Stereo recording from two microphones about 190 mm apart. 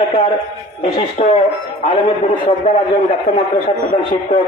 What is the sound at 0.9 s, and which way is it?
A man's voice, 35° left (ahead or behind).